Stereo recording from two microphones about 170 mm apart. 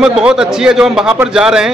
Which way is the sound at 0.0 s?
5° right (ahead or behind).